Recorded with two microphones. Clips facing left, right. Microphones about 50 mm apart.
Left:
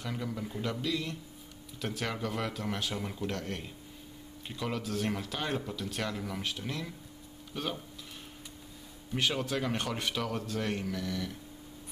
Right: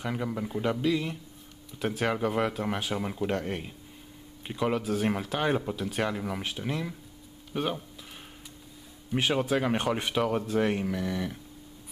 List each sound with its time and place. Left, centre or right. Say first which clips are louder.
0.0 s speech: right 5 dB; right
9.1 s speech: right 5 dB; centre